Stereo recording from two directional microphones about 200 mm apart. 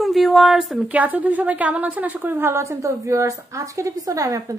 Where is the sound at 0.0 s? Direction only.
Centre (ahead or behind).